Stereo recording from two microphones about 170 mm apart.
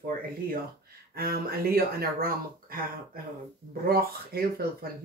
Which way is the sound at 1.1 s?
65° right (ahead or behind).